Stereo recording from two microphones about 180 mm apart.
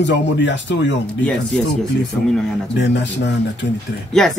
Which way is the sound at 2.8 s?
75° left (ahead or behind).